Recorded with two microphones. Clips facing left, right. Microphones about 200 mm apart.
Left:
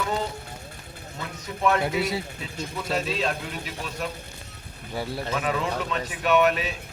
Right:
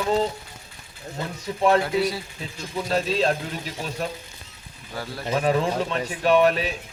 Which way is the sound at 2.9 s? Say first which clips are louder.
Right 5 dB; 35° right (ahead or behind).